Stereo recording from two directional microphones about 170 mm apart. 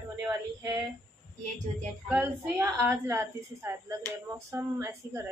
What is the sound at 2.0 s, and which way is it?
A woman's voice, 15° right (ahead or behind).